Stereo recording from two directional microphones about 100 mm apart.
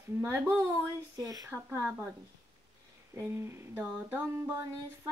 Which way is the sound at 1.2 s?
40° right (ahead or behind).